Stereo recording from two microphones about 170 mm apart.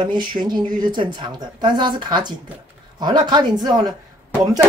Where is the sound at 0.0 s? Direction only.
25° right (ahead or behind).